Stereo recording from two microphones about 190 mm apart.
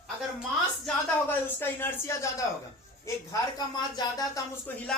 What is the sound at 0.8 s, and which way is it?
Speech, 10° left (ahead or behind).